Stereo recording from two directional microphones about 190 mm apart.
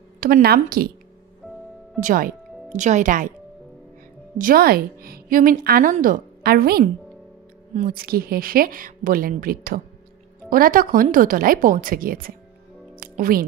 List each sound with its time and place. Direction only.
0.2 s a woman's voice: 55° right (ahead or behind)
2.0 s speech: 45° right (ahead or behind)
4.4 s a woman's voice: 50° right (ahead or behind)
12.9 s music: 50° right (ahead or behind)